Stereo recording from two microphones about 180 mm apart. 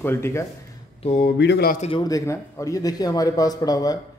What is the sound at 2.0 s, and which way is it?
A man's voice, 15° left (ahead or behind).